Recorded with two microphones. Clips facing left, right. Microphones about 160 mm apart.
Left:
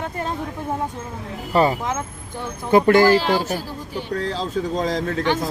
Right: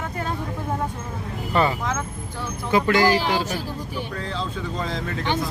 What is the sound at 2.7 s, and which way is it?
Speech, 50° left (ahead or behind).